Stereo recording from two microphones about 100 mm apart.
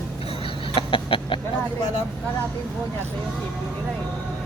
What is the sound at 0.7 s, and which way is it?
Chicken, 60° left (ahead or behind).